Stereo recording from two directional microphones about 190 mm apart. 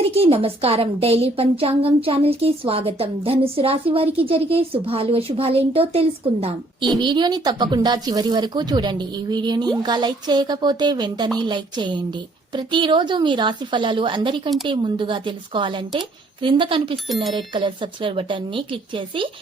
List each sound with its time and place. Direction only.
0.1 s a woman's voice: 30° right (ahead or behind)